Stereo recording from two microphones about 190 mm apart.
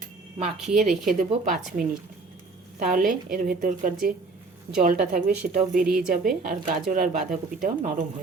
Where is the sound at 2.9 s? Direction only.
45° right (ahead or behind).